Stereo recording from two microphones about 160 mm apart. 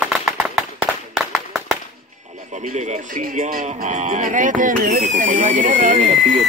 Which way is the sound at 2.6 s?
50° right (ahead or behind).